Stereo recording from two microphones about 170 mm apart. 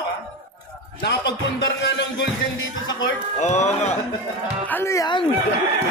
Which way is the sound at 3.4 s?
40° left (ahead or behind).